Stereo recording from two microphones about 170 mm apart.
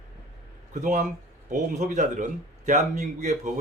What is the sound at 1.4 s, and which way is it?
A man's voice, 45° right (ahead or behind).